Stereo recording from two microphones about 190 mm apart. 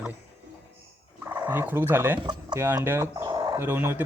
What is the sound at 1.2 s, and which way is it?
A man's voice, 10° right (ahead or behind).